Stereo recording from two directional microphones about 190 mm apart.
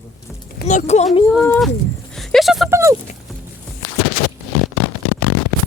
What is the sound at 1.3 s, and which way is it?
Speech, centre (ahead or behind).